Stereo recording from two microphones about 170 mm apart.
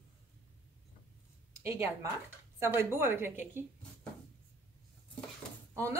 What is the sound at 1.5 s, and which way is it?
A woman's voice, 15° right (ahead or behind).